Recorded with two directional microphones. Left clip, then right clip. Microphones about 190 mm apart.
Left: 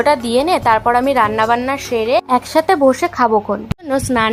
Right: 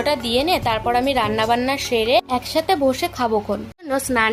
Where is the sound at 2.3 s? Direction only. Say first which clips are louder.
Left 6 dB; 35° left (ahead or behind).